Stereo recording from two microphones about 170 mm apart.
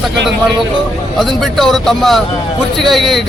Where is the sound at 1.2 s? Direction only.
Centre (ahead or behind).